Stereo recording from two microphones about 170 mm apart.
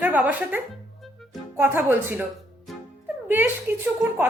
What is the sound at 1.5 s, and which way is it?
Speech, 15° right (ahead or behind).